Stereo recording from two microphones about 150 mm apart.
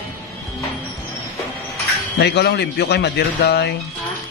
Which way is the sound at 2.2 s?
90° left.